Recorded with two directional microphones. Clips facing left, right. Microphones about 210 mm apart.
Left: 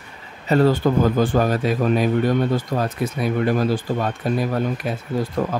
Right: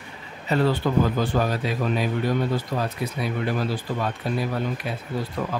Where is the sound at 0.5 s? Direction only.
45° left (ahead or behind).